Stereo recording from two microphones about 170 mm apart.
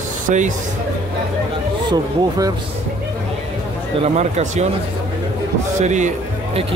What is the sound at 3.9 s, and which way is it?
Speech, 40° right (ahead or behind).